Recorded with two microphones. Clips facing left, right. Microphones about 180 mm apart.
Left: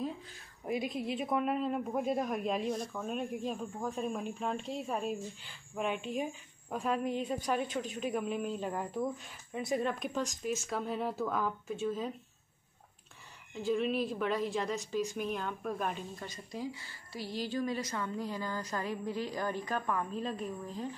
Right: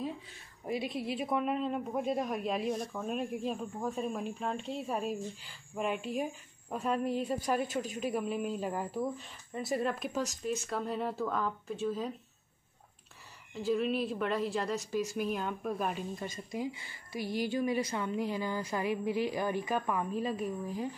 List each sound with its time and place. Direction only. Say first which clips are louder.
0.0 s a woman's voice: even; centre (ahead or behind)
13.6 s a woman's voice: right 1 dB; centre (ahead or behind)
16.5 s a woman's voice: right 2 dB; 15° right (ahead or behind)